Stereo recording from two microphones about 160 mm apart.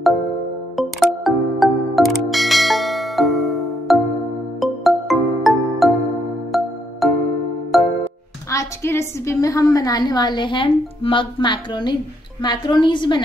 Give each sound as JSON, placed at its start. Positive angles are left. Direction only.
{"t": 0.7, "sound": "music", "side_deg": 0}
{"t": 8.5, "sound": "a woman's voice", "side_deg": 15}